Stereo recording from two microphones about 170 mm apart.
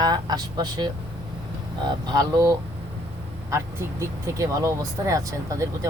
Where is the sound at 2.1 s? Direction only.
20° right (ahead or behind).